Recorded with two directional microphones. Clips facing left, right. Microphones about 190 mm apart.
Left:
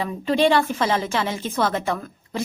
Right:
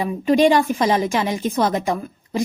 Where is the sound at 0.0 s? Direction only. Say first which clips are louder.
Right 4 dB; 15° right (ahead or behind).